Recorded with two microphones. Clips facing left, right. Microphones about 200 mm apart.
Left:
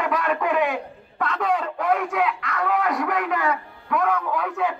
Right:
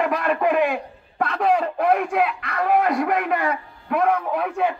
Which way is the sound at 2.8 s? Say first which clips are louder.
Right 3 dB; 25° right (ahead or behind).